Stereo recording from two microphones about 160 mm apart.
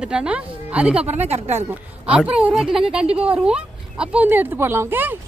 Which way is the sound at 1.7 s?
5° right (ahead or behind).